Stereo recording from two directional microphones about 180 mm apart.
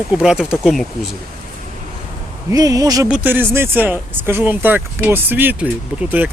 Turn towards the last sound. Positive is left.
turn(degrees=-10)  # may be behind; listen again after turning